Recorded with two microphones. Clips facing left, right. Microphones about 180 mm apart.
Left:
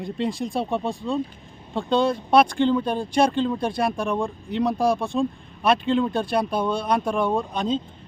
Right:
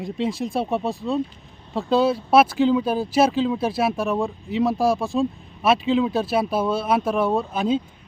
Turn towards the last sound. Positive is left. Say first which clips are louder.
# right 2 dB
turn(degrees=-5)  # may be behind; listen again after turning